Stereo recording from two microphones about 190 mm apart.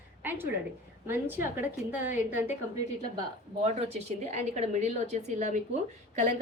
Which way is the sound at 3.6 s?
35° right (ahead or behind).